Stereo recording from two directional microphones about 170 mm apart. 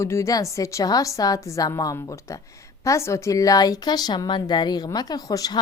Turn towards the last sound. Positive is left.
turn(degrees=20)  # may be behind; listen again after turning